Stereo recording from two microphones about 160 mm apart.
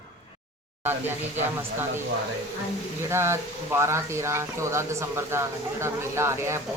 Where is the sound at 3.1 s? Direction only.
15° right (ahead or behind).